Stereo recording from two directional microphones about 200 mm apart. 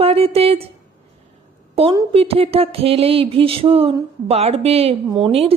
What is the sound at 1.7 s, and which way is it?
A woman's voice, 30° right (ahead or behind).